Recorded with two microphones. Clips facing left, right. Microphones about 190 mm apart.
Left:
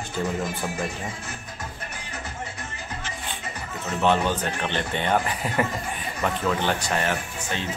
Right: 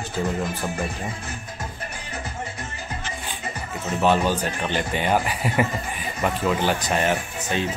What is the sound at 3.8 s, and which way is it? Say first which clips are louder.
A man's voice: right 2 dB; 5° right (ahead or behind).